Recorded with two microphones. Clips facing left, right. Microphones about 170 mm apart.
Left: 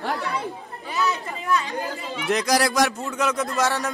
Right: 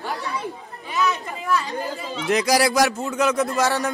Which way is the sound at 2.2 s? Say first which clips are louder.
Right 2 dB; centre (ahead or behind).